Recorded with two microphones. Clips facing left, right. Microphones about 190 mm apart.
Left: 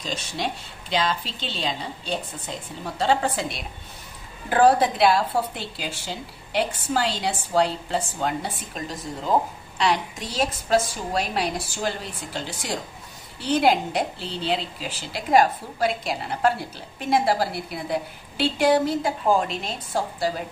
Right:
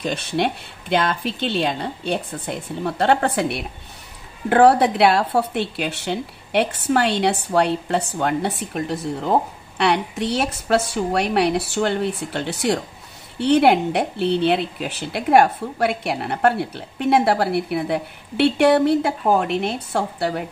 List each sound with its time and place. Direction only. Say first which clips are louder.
0.0 s a woman's voice: right 7 dB; 60° right (ahead or behind)